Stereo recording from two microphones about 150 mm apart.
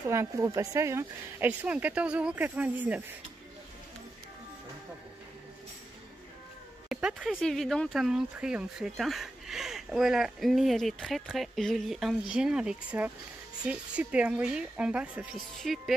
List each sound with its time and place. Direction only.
0.0 s speech: 20° right (ahead or behind)
6.9 s speech: 5° right (ahead or behind)